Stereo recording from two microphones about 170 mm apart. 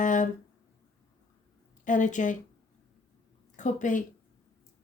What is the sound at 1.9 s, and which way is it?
Speech, 50° left (ahead or behind).